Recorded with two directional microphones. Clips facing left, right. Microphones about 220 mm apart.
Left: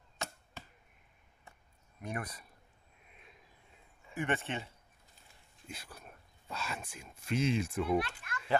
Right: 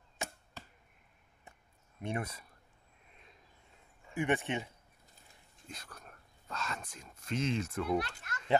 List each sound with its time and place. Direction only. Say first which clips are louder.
2.0 s speech: right 3 dB; 25° right (ahead or behind)
4.1 s speech: right 3 dB; 15° right (ahead or behind)
5.7 s speech: left 1 dB; 5° left (ahead or behind)
8.2 s a child's voice: left 2 dB; 40° right (ahead or behind)